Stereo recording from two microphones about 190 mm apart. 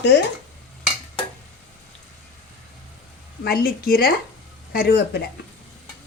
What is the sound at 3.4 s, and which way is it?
A woman's voice, 55° left (ahead or behind).